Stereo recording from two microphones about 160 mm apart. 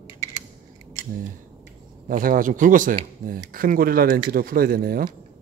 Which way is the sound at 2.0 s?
60° right (ahead or behind).